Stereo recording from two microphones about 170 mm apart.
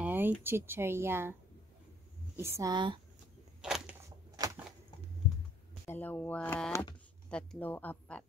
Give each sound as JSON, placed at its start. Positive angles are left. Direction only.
{"t": 0.0, "sound": "speech", "side_deg": -10}
{"t": 2.3, "sound": "speech", "side_deg": -15}
{"t": 3.6, "sound": "a sound", "side_deg": -5}
{"t": 5.9, "sound": "speech", "side_deg": 10}